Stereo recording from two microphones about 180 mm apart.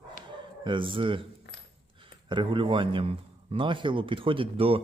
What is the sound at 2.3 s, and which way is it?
Speech, 25° right (ahead or behind).